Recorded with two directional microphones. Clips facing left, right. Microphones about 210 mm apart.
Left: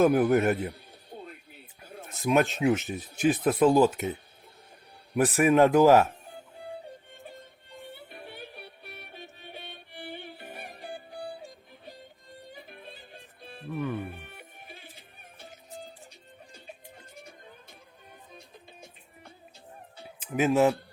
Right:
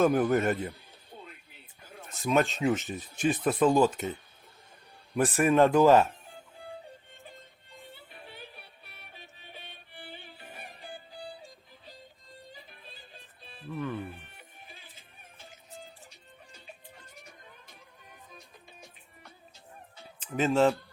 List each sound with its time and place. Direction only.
0.0 s speech: 10° left (ahead or behind)
2.2 s speech: 10° left (ahead or behind)
7.8 s music: 65° left (ahead or behind)
13.7 s music: 10° left (ahead or behind)
14.1 s music: 60° left (ahead or behind)
18.3 s music: 25° left (ahead or behind)
20.3 s speech: 10° left (ahead or behind)